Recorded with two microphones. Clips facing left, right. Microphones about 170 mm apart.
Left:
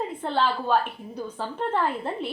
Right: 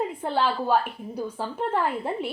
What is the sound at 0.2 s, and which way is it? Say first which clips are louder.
A woman's voice: left 2 dB; 10° right (ahead or behind).